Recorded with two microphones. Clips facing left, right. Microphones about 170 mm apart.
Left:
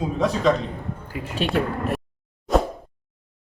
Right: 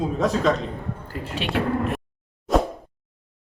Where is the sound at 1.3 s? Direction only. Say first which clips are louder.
Even; 45° left (ahead or behind).